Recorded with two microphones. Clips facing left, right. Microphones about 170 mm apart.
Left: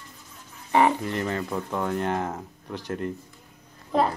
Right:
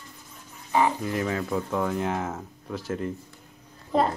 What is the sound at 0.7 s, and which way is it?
Chicken, 70° left (ahead or behind).